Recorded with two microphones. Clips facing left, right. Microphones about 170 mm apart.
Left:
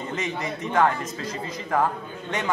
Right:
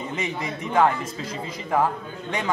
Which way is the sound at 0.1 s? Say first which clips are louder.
Left 2 dB; 10° right (ahead or behind).